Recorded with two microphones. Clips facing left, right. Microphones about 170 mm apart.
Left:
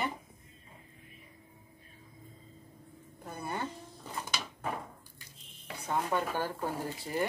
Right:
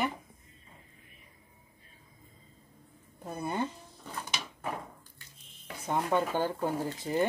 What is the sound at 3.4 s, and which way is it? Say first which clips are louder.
Speech: right 4 dB; 20° right (ahead or behind).